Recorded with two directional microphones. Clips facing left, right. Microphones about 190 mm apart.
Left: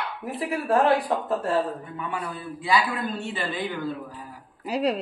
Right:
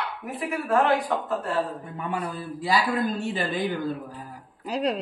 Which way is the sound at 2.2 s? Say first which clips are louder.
Right 2 dB; 35° right (ahead or behind).